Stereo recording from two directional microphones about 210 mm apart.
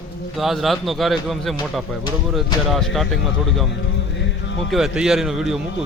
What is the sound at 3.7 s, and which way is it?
Music, 60° left (ahead or behind).